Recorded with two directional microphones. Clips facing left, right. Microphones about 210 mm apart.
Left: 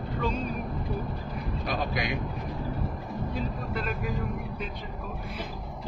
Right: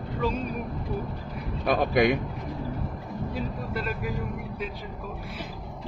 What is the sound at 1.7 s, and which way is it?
Speech, 55° right (ahead or behind).